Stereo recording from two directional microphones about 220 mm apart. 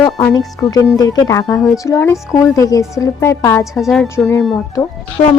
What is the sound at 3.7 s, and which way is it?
Speech, centre (ahead or behind).